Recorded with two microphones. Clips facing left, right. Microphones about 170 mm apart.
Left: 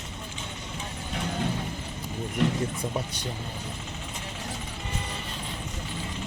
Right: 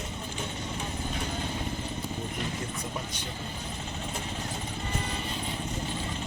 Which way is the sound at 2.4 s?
70° left (ahead or behind).